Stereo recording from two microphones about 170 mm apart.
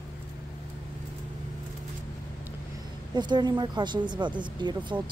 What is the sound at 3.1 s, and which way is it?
A woman's voice, 25° right (ahead or behind).